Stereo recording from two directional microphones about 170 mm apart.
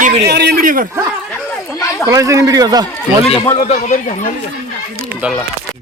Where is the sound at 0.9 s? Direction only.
15° right (ahead or behind).